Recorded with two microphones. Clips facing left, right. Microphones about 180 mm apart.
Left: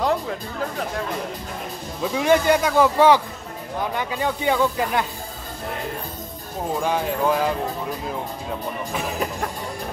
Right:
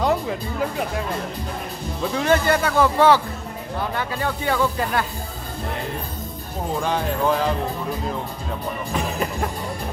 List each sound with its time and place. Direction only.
0.0 s music: 5° right (ahead or behind)
2.1 s speech: 15° left (ahead or behind)
6.8 s speech: 10° left (ahead or behind)
8.9 s music: centre (ahead or behind)